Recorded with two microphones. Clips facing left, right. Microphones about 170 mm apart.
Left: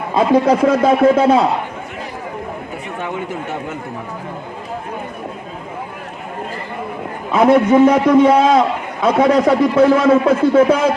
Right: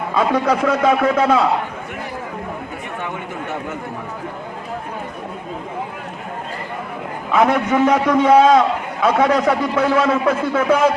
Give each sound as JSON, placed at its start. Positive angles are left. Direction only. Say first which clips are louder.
{"t": 0.1, "sound": "a man's voice", "louder": "left 5 dB", "side_deg": 30}
{"t": 7.3, "sound": "a man's voice", "louder": "left 5 dB", "side_deg": 30}